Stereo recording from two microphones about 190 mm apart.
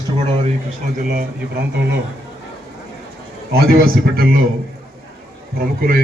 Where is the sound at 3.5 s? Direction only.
55° right (ahead or behind).